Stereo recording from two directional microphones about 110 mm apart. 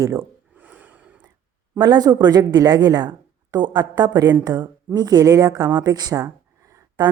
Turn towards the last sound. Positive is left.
turn(degrees=-30)  # may be behind; listen again after turning